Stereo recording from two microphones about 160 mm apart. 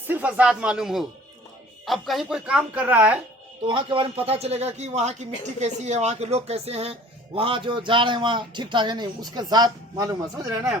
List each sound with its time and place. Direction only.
0.1 s a woman's voice: 10° right (ahead or behind)
3.7 s a man's voice: 30° right (ahead or behind)